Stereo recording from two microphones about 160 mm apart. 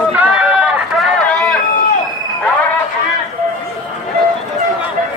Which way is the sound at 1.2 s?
5° left (ahead or behind).